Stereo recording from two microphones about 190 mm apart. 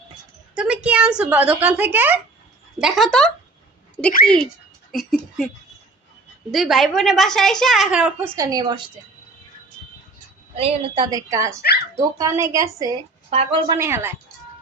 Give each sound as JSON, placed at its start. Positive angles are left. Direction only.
{"t": 0.5, "sound": "a woman's voice", "side_deg": -5}
{"t": 4.9, "sound": "a woman's voice", "side_deg": 0}
{"t": 6.5, "sound": "a woman's voice", "side_deg": 0}
{"t": 8.4, "sound": "a woman's voice", "side_deg": -20}
{"t": 10.5, "sound": "a woman's voice", "side_deg": -30}
{"t": 13.3, "sound": "a woman's voice", "side_deg": -30}
{"t": 13.7, "sound": "a woman's voice", "side_deg": -15}